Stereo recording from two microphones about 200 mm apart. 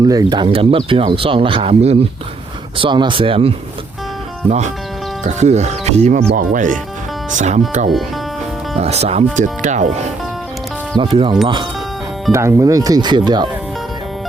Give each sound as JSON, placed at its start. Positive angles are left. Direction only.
{"t": 0.0, "sound": "speech", "side_deg": -20}
{"t": 10.9, "sound": "speech", "side_deg": -25}